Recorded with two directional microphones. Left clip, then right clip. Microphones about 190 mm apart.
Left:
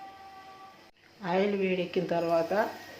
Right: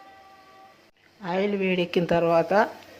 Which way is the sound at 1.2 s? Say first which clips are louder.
Right 2 dB; 15° right (ahead or behind).